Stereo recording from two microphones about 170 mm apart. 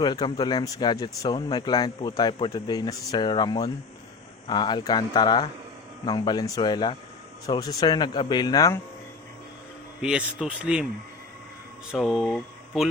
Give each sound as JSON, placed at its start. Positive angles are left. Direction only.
{"t": 0.0, "sound": "speech", "side_deg": 25}
{"t": 10.0, "sound": "speech", "side_deg": -5}
{"t": 11.9, "sound": "speech", "side_deg": 0}